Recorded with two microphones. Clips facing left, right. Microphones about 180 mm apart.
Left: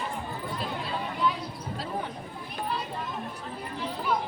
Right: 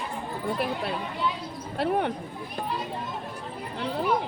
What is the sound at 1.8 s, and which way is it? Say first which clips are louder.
Speech: right 10 dB; 65° right (ahead or behind).